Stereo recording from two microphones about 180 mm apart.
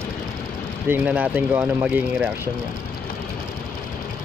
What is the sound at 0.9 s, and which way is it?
Speech, 10° right (ahead or behind).